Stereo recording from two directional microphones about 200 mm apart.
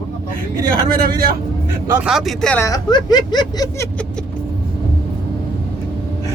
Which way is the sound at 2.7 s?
20° left (ahead or behind).